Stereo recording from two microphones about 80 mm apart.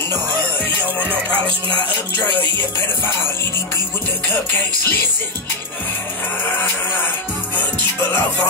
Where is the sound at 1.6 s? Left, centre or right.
Right.